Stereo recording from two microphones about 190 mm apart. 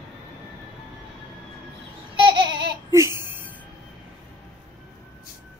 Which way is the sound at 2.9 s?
15° right (ahead or behind).